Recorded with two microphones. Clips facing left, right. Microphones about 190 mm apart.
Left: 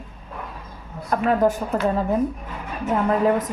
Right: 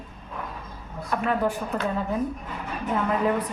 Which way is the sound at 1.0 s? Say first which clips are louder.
Left 6 dB; 45° left (ahead or behind).